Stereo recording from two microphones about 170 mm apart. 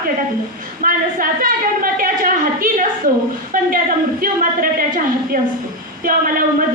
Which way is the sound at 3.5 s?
55° right (ahead or behind).